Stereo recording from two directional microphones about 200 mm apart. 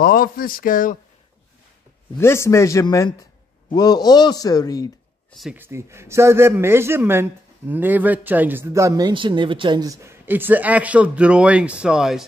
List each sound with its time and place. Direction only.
0.0 s speech: 45° left (ahead or behind)
2.1 s speech: 15° left (ahead or behind)
5.3 s a man's voice: 5° right (ahead or behind)